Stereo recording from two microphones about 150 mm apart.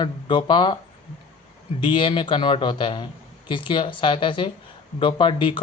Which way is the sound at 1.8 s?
35° left (ahead or behind).